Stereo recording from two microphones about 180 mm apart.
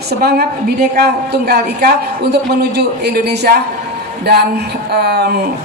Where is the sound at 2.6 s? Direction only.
65° right (ahead or behind).